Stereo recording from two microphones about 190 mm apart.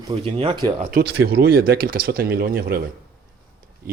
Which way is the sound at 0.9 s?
60° right (ahead or behind).